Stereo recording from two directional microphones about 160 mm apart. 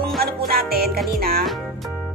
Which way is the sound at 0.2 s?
70° right (ahead or behind).